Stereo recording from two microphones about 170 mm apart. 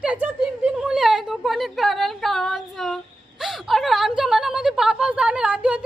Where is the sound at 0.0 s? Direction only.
5° right (ahead or behind).